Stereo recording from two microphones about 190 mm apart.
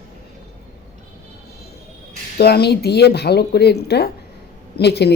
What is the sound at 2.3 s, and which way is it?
A woman's voice, 55° left (ahead or behind).